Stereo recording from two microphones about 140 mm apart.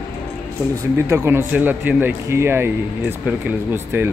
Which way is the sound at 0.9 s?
20° right (ahead or behind).